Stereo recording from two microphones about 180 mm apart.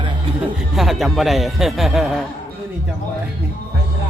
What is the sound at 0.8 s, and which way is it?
Speech, centre (ahead or behind).